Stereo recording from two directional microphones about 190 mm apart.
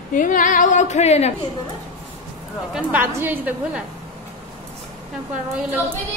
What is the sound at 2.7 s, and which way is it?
A woman's voice, 10° right (ahead or behind).